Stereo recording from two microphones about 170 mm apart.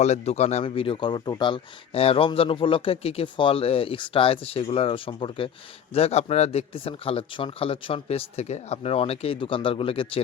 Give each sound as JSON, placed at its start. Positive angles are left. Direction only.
{"t": 0.0, "sound": "speech", "side_deg": 40}